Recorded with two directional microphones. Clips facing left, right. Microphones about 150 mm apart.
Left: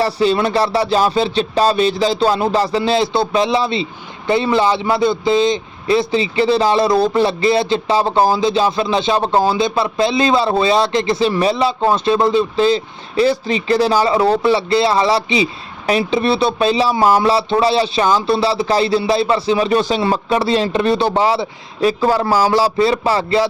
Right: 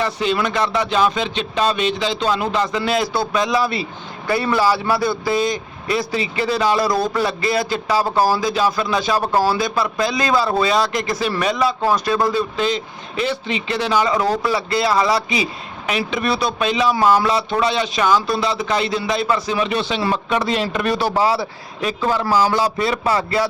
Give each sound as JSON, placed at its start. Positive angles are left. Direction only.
{"t": 0.0, "sound": "a man's voice", "side_deg": 35}
{"t": 20.0, "sound": "a man's voice", "side_deg": 30}